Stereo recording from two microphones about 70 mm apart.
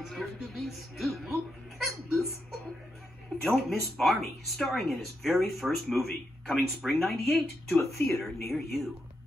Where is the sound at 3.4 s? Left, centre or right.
Centre.